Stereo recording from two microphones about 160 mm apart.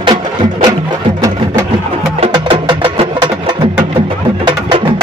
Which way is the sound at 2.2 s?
30° right (ahead or behind).